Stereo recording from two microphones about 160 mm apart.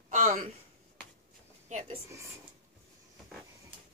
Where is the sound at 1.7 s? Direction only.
50° right (ahead or behind).